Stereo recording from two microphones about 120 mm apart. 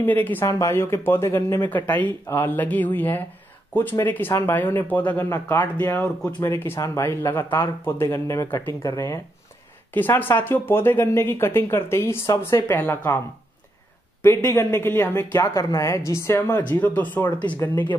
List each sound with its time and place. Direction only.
0.0 s speech: 15° left (ahead or behind)
0.5 s speech: 25° left (ahead or behind)
9.9 s speech: 15° left (ahead or behind)
14.2 s speech: 20° left (ahead or behind)